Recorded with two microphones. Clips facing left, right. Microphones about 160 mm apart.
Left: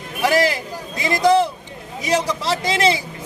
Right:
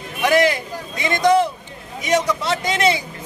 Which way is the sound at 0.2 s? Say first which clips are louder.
Right 1 dB; 35° left (ahead or behind).